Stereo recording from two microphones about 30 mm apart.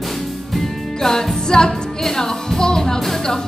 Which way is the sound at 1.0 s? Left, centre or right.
Centre.